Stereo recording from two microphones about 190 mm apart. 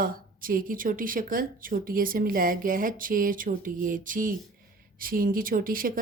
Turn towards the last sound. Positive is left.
turn(degrees=-50)  # may be behind; listen again after turning